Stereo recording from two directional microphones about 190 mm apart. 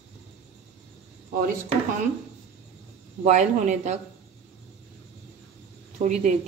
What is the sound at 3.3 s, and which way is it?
Speech, 40° right (ahead or behind).